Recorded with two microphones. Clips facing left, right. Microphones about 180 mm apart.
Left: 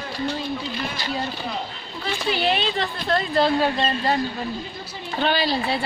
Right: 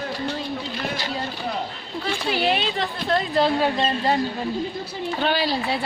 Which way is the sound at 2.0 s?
5° right (ahead or behind).